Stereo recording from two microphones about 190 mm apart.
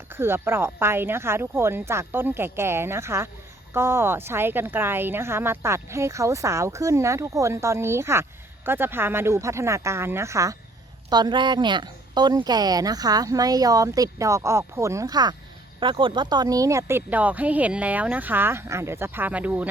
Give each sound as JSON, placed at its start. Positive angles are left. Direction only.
{"t": 0.1, "sound": "a woman's voice", "side_deg": -10}